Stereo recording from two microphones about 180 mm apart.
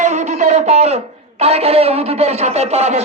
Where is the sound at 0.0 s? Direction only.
40° right (ahead or behind).